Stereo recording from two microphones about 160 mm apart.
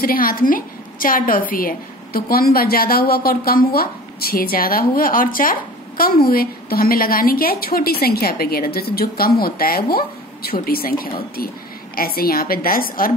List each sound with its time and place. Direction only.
0.0 s a woman's voice: 65° left (ahead or behind)